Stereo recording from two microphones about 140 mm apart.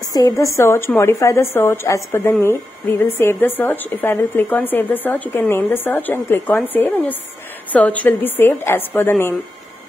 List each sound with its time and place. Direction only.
0.1 s a woman's voice: 25° left (ahead or behind)